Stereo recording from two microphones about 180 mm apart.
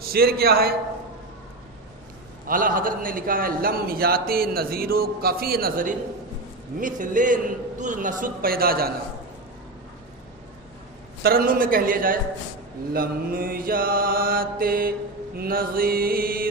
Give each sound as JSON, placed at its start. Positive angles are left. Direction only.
{"t": 0.1, "sound": "a man's voice", "side_deg": -60}
{"t": 2.5, "sound": "a man's voice", "side_deg": -50}
{"t": 6.7, "sound": "mantra", "side_deg": -45}
{"t": 11.2, "sound": "mantra", "side_deg": -55}
{"t": 15.4, "sound": "a man's voice", "side_deg": -55}